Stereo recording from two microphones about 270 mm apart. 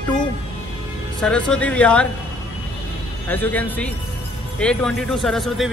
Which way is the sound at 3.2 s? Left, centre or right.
Centre.